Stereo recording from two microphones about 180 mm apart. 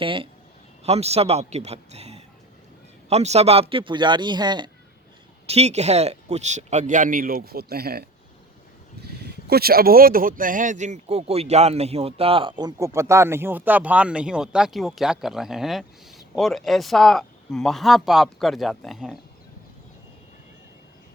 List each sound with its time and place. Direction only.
0.0 s speech: 30° right (ahead or behind)
5.5 s speech: 35° right (ahead or behind); by 19.1 s centre (ahead or behind)